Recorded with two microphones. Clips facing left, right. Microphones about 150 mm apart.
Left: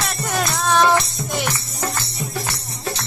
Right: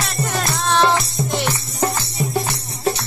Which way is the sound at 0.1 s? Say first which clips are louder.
Even; centre (ahead or behind).